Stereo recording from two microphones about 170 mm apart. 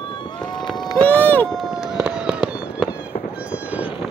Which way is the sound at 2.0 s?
5° right (ahead or behind).